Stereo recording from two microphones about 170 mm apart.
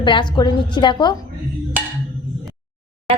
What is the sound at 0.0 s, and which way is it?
A woman's voice, 30° left (ahead or behind).